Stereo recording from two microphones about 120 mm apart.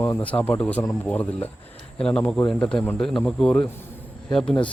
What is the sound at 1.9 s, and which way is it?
Speech, 10° left (ahead or behind).